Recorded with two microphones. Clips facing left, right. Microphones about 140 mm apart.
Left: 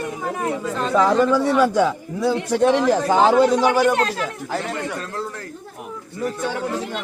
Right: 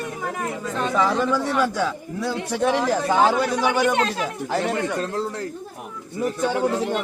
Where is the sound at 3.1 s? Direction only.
20° left (ahead or behind).